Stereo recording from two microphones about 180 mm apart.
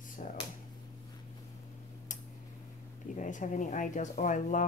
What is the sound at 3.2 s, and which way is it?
Speech, 45° left (ahead or behind).